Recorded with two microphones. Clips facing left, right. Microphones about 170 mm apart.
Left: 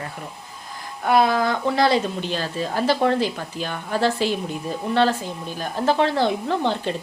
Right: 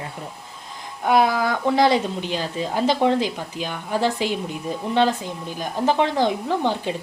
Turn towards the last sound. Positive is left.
turn(degrees=-15)  # may be behind; listen again after turning